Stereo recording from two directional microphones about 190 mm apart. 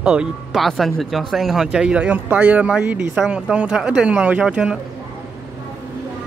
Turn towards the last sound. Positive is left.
turn(degrees=-5)  # may be behind; listen again after turning